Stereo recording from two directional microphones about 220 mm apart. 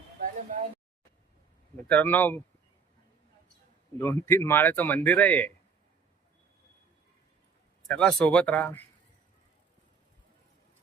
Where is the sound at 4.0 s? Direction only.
10° left (ahead or behind).